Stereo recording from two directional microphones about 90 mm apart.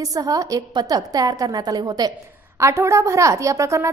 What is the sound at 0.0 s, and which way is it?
A woman's voice, 40° right (ahead or behind).